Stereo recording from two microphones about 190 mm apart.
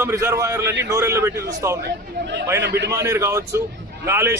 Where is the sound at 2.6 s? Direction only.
65° right (ahead or behind).